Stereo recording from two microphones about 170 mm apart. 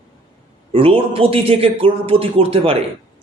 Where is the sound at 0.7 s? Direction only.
30° right (ahead or behind).